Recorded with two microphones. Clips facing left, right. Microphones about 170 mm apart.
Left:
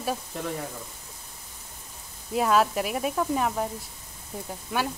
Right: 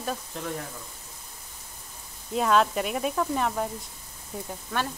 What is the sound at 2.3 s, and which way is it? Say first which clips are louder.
Speech: even; 5° left (ahead or behind).